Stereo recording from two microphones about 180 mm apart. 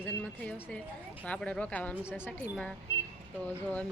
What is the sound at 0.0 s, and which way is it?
Speech, 10° left (ahead or behind).